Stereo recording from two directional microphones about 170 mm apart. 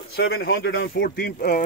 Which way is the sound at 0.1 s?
65° left (ahead or behind).